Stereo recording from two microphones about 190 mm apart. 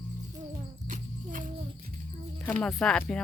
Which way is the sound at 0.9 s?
45° right (ahead or behind).